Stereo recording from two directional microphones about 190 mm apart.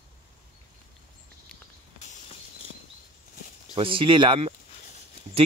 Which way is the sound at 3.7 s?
25° right (ahead or behind).